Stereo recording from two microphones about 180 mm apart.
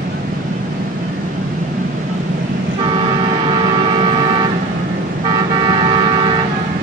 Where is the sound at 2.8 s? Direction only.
25° right (ahead or behind).